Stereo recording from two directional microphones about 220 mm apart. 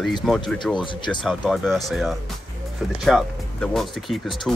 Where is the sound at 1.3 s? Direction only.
Centre (ahead or behind).